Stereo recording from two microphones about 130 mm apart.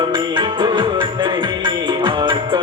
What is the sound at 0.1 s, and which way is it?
Music, 40° right (ahead or behind).